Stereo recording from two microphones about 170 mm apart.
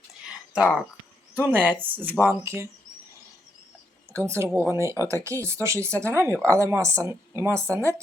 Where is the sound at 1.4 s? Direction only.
10° right (ahead or behind).